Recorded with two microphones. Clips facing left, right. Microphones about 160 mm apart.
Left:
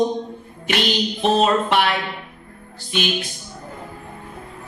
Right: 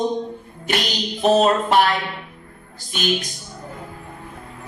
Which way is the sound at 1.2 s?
40° right (ahead or behind).